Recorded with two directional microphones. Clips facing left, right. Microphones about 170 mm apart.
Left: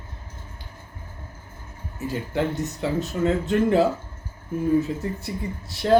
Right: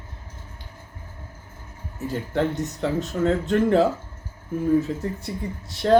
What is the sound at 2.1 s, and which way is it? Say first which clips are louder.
Speech: right 1 dB; 5° left (ahead or behind).